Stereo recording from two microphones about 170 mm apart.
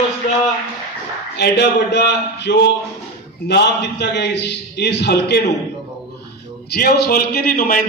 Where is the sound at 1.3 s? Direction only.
80° left.